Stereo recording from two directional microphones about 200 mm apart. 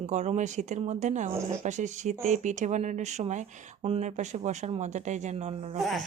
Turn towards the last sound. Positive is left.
turn(degrees=0)  # may be behind; listen again after turning